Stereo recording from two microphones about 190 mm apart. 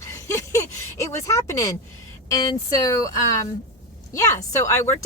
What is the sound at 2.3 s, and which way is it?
Speech, 20° left (ahead or behind).